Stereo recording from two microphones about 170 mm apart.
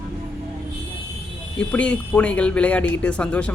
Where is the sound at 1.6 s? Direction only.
5° left (ahead or behind).